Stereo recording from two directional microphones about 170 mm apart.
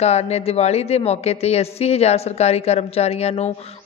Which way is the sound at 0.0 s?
40° left (ahead or behind).